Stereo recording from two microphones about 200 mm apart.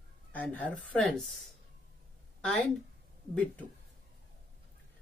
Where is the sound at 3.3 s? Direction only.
5° left (ahead or behind).